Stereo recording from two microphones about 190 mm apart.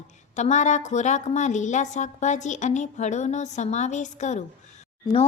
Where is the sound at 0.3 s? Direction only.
40° left (ahead or behind).